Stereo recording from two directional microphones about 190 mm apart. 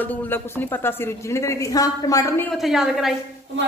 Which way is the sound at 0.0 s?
10° left (ahead or behind).